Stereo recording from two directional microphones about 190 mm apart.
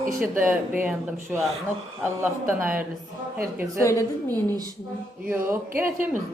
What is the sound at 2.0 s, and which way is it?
Speech, 10° right (ahead or behind).